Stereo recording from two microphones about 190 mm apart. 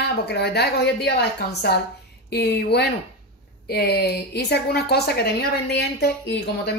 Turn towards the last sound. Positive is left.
turn(degrees=60)  # may be behind; listen again after turning